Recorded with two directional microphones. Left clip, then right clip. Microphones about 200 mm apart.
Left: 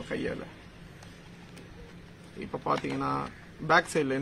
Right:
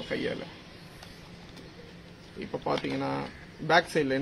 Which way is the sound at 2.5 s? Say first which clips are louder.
Even; 10° left (ahead or behind).